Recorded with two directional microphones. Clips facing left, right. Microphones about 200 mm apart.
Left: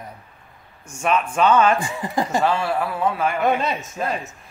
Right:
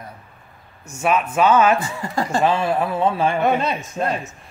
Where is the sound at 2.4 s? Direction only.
20° right (ahead or behind).